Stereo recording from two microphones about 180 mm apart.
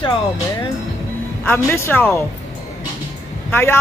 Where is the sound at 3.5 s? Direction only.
10° left (ahead or behind).